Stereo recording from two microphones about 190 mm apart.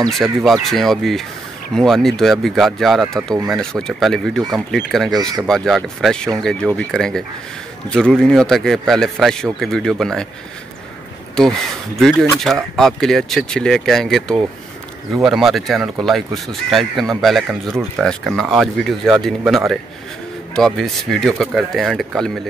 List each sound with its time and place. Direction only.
0.2 s speech: centre (ahead or behind)
5.1 s speech: 20° right (ahead or behind)
5.5 s speech: centre (ahead or behind)
11.4 s speech: 5° left (ahead or behind)